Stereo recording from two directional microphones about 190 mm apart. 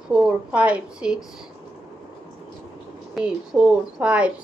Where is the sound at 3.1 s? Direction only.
5° right (ahead or behind).